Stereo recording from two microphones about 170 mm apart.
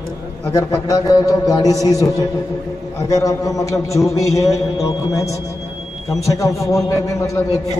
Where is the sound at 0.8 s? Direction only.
20° left (ahead or behind).